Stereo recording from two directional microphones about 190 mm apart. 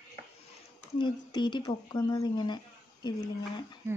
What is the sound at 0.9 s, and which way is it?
Speech, 25° left (ahead or behind).